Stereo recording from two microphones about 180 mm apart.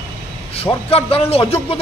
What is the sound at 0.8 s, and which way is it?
Speech, 35° left (ahead or behind).